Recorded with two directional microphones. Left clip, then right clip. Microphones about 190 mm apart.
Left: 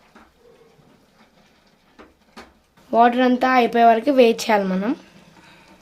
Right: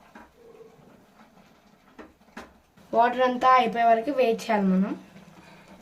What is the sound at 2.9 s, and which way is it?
Speech, 60° left (ahead or behind).